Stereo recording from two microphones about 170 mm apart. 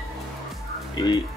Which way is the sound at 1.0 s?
25° left (ahead or behind).